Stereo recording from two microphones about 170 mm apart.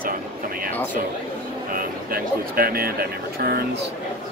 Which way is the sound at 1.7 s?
60° right (ahead or behind).